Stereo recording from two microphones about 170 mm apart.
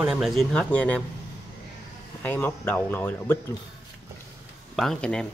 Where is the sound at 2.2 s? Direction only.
10° left (ahead or behind).